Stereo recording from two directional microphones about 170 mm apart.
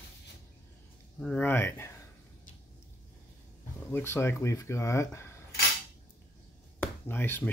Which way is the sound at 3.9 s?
15° left (ahead or behind).